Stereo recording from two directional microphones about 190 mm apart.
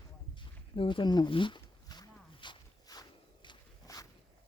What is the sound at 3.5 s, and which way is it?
Walk, 20° left (ahead or behind).